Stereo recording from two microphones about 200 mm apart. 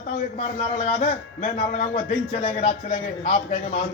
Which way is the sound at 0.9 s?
35° left (ahead or behind).